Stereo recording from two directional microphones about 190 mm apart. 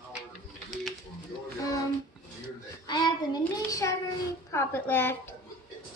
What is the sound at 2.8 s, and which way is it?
Child singing, 20° left (ahead or behind).